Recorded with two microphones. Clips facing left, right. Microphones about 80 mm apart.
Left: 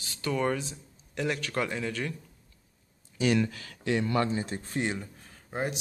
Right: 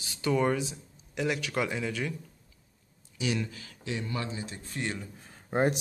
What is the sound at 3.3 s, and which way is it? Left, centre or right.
Speech, left.